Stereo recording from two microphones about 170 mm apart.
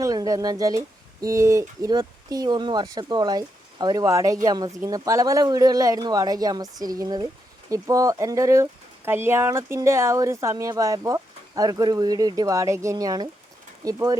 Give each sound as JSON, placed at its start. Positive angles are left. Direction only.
{"t": 0.0, "sound": "speech", "side_deg": -20}